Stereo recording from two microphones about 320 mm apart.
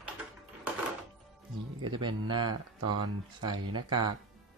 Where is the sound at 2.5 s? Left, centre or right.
Right.